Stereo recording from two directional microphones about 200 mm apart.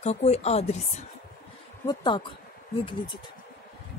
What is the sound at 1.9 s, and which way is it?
Speech, 25° left (ahead or behind).